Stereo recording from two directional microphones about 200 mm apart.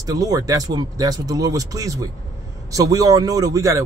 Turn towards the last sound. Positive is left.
turn(degrees=-15)  # may be behind; listen again after turning